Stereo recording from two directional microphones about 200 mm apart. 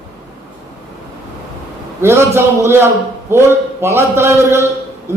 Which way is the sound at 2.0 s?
15° right (ahead or behind).